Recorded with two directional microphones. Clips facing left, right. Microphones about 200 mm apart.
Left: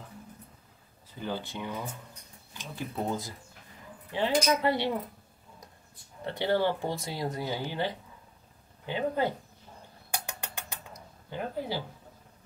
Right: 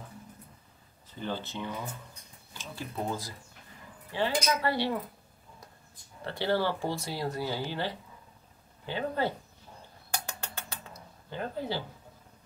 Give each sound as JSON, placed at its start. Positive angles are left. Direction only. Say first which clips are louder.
{"t": 1.2, "sound": "speech", "louder": "even", "side_deg": 15}
{"t": 6.2, "sound": "speech", "louder": "left 2 dB", "side_deg": 20}
{"t": 10.1, "sound": "a sound", "louder": "even", "side_deg": 15}